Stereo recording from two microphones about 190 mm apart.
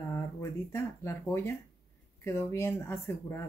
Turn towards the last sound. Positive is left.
turn(degrees=15)  # may be behind; listen again after turning